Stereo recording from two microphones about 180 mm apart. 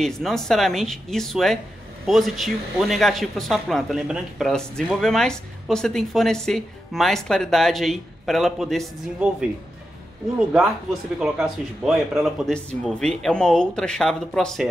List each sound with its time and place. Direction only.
0.0 s speech: centre (ahead or behind)
10.5 s speech: 5° right (ahead or behind)